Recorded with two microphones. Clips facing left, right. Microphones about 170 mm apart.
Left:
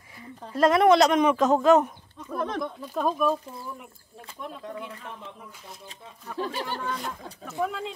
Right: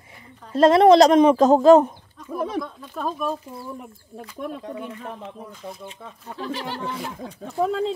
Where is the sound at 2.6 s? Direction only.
15° left (ahead or behind).